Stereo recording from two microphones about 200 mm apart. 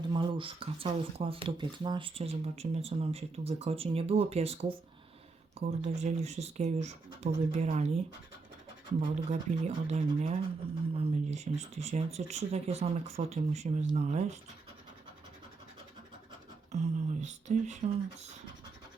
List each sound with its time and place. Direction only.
0.1 s speech: 25° right (ahead or behind)
9.3 s speech: 35° right (ahead or behind)
16.7 s speech: 35° right (ahead or behind)